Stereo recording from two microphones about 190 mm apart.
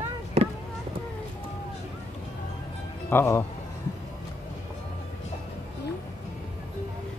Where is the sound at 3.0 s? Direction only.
10° left (ahead or behind).